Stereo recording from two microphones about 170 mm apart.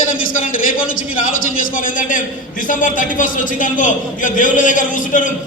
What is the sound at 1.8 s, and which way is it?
A man's voice, 50° left (ahead or behind).